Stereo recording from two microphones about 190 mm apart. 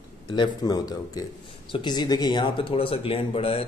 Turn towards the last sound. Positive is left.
turn(degrees=30)  # may be behind; listen again after turning